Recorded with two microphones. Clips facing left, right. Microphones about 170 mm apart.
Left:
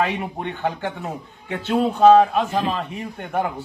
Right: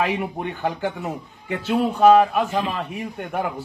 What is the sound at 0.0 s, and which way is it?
A man's voice, 5° right (ahead or behind).